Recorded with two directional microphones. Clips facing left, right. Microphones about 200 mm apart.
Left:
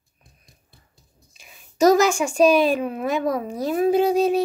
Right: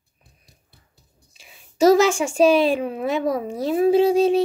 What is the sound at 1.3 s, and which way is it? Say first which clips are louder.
A woman's voice: even; 25° right (ahead or behind).